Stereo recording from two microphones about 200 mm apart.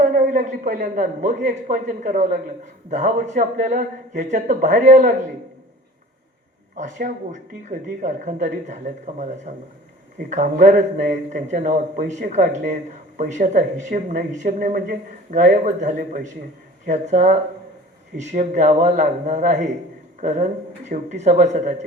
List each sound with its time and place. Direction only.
0.0 s a man's voice: 40° right (ahead or behind)
6.7 s speech: 40° right (ahead or behind)
18.3 s speech: 35° right (ahead or behind)